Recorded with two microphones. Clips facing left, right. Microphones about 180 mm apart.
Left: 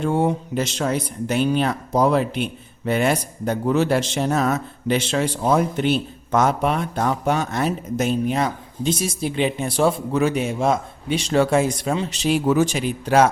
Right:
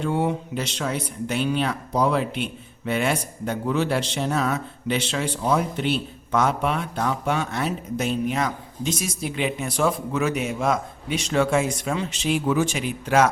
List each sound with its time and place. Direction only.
0.0 s speech: 45° left (ahead or behind)